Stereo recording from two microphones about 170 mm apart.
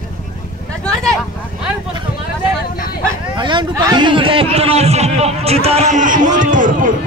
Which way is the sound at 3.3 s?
25° right (ahead or behind).